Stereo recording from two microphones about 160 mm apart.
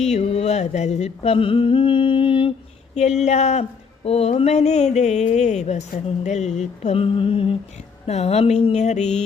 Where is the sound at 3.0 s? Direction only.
45° left (ahead or behind).